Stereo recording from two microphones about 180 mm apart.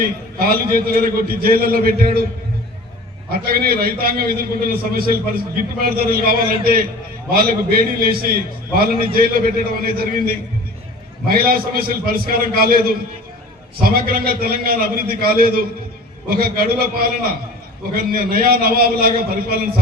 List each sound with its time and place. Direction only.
0.0 s a man's voice: 55° right (ahead or behind)
3.3 s a man's voice: 55° right (ahead or behind)
13.8 s a man's voice: 55° right (ahead or behind)